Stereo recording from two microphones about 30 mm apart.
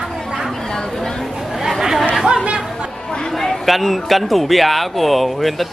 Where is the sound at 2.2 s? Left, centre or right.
Right.